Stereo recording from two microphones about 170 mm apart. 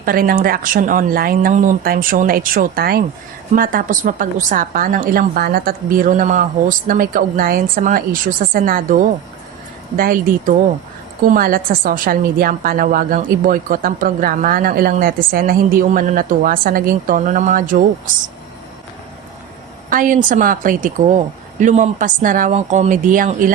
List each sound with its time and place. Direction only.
0.0 s a woman's voice: 55° right (ahead or behind)
10.0 s a woman's voice: 55° right (ahead or behind)
19.9 s speech: 50° right (ahead or behind)